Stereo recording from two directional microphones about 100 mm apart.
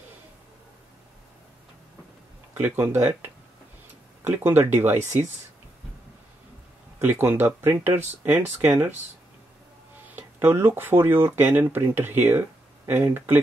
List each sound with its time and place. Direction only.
2.5 s speech: 20° right (ahead or behind)
4.3 s speech: 20° right (ahead or behind)
7.0 s speech: 20° right (ahead or behind)
10.1 s speech: 20° right (ahead or behind)